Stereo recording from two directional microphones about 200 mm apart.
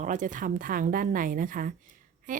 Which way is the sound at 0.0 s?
40° right (ahead or behind).